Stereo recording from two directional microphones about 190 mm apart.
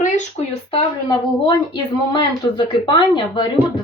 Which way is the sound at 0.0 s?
40° left (ahead or behind).